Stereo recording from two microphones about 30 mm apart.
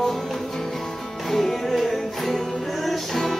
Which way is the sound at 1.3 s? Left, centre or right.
Centre.